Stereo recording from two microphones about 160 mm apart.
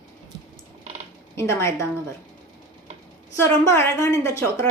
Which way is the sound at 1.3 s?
15° left (ahead or behind).